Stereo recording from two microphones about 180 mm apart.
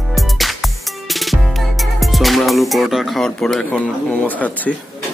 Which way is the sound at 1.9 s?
Centre (ahead or behind).